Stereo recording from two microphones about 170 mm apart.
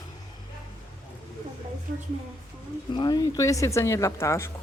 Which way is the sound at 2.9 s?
25° left (ahead or behind).